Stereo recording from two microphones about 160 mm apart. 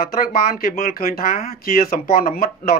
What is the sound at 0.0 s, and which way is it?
A man's voice, 65° left (ahead or behind).